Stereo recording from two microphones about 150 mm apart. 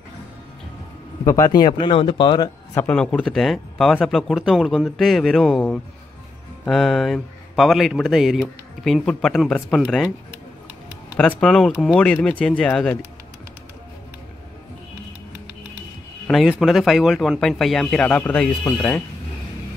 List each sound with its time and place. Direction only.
1.2 s speech: 20° left (ahead or behind)
2.7 s speech: 10° left (ahead or behind)
11.1 s speech: 5° left (ahead or behind)
16.3 s speech: centre (ahead or behind)